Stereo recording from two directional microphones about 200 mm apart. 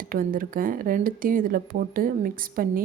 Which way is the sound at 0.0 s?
45° right (ahead or behind).